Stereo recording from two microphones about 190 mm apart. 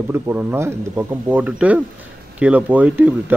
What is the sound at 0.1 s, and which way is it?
A man's voice, 10° right (ahead or behind).